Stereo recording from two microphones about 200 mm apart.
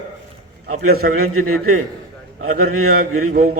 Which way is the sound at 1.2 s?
90° right.